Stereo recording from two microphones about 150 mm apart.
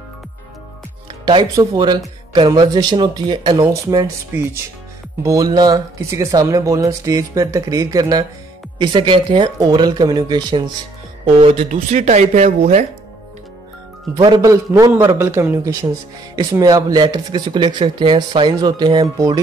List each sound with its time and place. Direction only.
1.2 s speech: 25° right (ahead or behind)
5.2 s speech: 25° right (ahead or behind)
11.3 s speech: 45° right (ahead or behind)
14.1 s speech: 25° right (ahead or behind)